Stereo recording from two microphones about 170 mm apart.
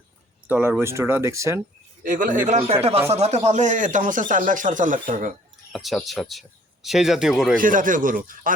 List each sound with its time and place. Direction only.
0.4 s speech: 10° right (ahead or behind)
2.0 s speech: 50° right (ahead or behind)
5.7 s speech: centre (ahead or behind)
7.5 s speech: 50° right (ahead or behind)